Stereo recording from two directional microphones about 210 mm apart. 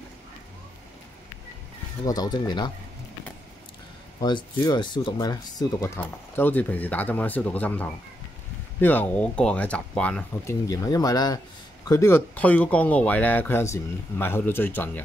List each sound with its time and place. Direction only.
2.0 s speech: 20° left (ahead or behind)
4.2 s speech: 20° left (ahead or behind)
10.7 s speech: 15° left (ahead or behind)